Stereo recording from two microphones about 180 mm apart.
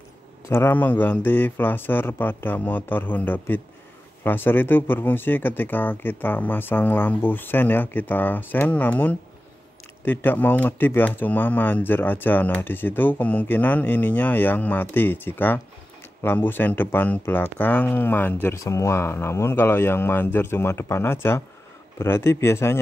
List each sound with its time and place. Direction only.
0.5 s speech: 15° left (ahead or behind)